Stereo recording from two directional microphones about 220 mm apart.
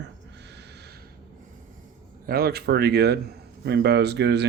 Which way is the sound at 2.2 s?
45° right (ahead or behind).